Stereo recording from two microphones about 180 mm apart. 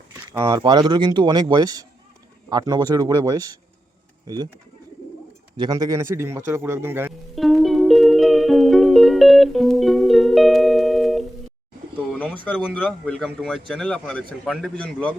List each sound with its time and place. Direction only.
0.3 s speech: 20° right (ahead or behind)
5.5 s speech: 20° right (ahead or behind)
7.3 s music: centre (ahead or behind)
11.9 s speech: 5° left (ahead or behind)